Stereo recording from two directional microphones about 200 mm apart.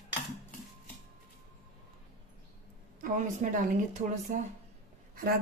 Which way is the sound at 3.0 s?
40° right (ahead or behind).